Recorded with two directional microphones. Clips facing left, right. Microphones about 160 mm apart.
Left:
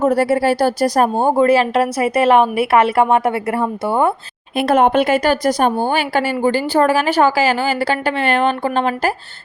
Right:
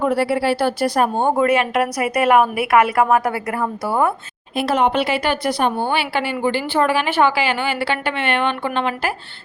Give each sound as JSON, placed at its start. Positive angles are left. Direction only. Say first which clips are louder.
{"t": 0.0, "sound": "speech", "louder": "left 4 dB", "side_deg": 40}
{"t": 4.5, "sound": "speech", "louder": "left 4 dB", "side_deg": 50}